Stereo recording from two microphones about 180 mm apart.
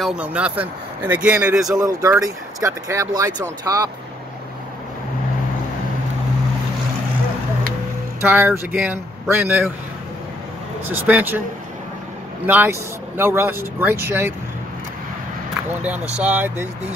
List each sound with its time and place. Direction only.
0.0 s a man's voice: 5° right (ahead or behind)
1.7 s speech: 20° right (ahead or behind)
8.2 s a man's voice: 10° right (ahead or behind)
10.9 s a man's voice: 10° right (ahead or behind)
12.4 s a man's voice: 10° right (ahead or behind)
16.2 s a man's voice: 10° right (ahead or behind)